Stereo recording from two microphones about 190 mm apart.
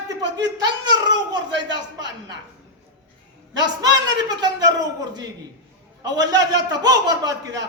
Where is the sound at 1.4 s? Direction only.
70° right (ahead or behind).